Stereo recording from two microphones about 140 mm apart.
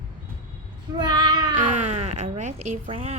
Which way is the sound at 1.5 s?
60° right (ahead or behind).